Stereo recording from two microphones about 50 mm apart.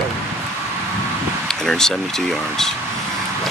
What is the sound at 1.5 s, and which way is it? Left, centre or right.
Speech, centre.